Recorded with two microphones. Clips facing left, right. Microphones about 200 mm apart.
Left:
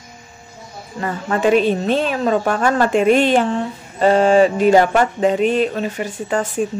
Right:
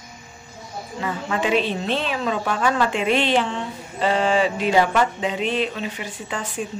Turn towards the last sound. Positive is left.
turn(degrees=45)  # may be behind; listen again after turning